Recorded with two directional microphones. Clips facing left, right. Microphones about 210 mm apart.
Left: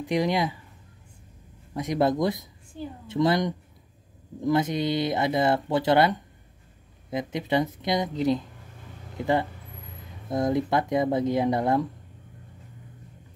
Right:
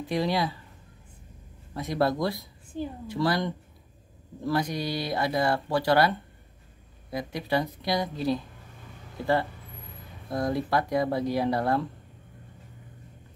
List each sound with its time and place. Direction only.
0.0 s speech: 15° left (ahead or behind)
1.7 s speech: 15° left (ahead or behind)